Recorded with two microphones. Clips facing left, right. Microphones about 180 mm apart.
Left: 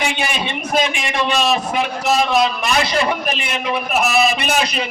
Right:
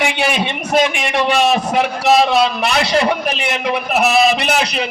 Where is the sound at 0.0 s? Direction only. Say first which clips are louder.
Right 4 dB; 70° right (ahead or behind).